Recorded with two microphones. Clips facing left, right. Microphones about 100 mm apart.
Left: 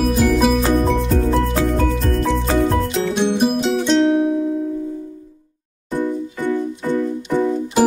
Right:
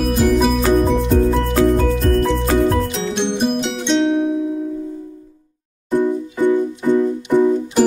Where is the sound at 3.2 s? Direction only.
5° left (ahead or behind).